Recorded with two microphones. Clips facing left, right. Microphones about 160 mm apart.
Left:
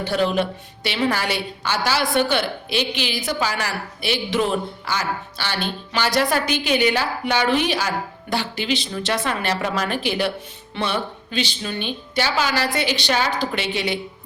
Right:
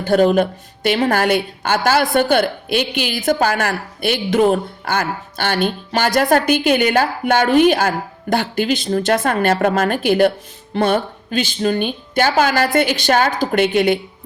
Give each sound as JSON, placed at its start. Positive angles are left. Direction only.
{"t": 0.0, "sound": "a woman's voice", "side_deg": -50}